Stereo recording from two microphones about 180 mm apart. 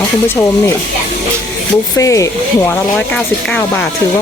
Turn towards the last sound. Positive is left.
turn(degrees=0)  # may be behind; listen again after turning